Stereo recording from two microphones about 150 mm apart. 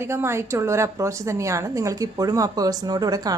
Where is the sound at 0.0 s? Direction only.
15° right (ahead or behind).